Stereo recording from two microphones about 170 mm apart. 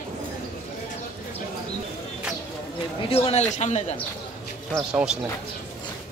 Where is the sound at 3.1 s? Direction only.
35° left (ahead or behind).